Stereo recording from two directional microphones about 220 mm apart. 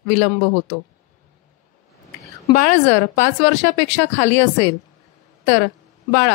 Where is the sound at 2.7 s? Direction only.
30° left (ahead or behind).